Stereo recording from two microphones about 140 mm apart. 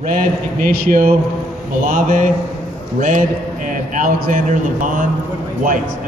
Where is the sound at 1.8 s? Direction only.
75° right (ahead or behind).